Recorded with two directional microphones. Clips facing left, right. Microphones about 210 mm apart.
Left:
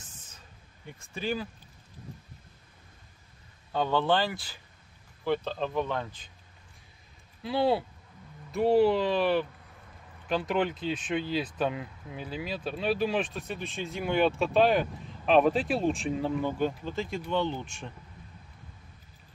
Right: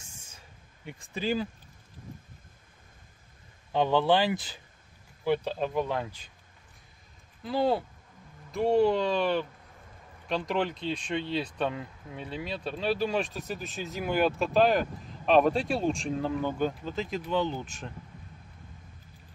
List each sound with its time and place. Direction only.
0.0 s a sound: 10° right (ahead or behind)
0.8 s speech: 15° right (ahead or behind)
3.7 s speech: 15° right (ahead or behind)
7.4 s speech: 5° left (ahead or behind)